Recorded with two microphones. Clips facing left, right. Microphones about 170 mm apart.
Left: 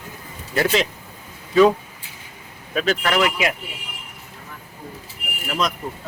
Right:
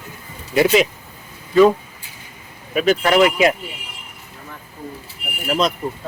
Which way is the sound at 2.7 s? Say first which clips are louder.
Right 5 dB; 15° right (ahead or behind).